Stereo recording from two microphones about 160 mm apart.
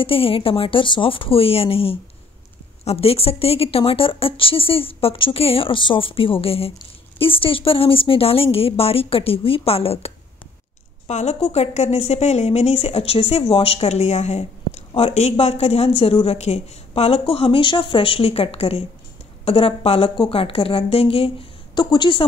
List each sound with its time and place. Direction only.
0.0 s speech: 35° left (ahead or behind)